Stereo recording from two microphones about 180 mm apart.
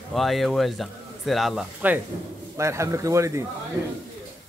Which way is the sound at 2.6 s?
15° right (ahead or behind).